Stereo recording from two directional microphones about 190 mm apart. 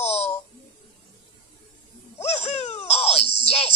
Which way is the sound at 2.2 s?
35° left (ahead or behind).